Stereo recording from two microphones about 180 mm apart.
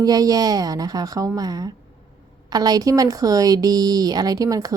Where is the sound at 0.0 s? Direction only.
20° right (ahead or behind).